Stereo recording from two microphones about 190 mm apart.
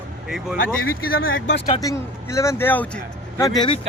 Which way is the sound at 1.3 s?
80° left.